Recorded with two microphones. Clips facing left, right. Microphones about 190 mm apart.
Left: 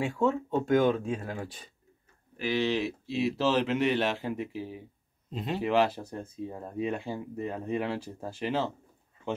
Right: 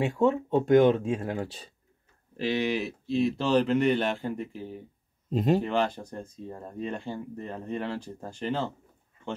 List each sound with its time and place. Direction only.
0.0 s speech: 20° right (ahead or behind)
2.8 s speech: 5° left (ahead or behind)
5.3 s speech: 45° right (ahead or behind)
5.6 s speech: 5° left (ahead or behind)